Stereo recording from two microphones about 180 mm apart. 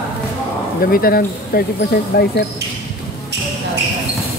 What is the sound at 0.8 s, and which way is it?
Speech, 55° left (ahead or behind).